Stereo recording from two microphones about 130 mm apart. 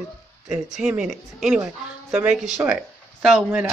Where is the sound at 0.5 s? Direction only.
5° right (ahead or behind).